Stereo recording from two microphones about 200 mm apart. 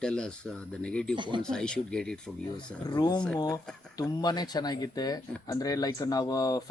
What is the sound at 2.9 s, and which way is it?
Speech, 20° left (ahead or behind).